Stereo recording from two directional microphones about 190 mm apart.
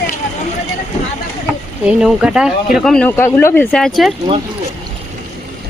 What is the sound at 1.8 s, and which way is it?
Speech, 5° right (ahead or behind).